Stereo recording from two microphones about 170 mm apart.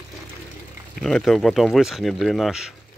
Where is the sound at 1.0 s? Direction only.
5° left (ahead or behind).